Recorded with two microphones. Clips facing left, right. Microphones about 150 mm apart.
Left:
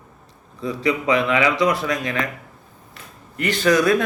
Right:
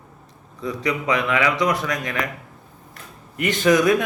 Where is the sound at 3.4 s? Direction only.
20° right (ahead or behind).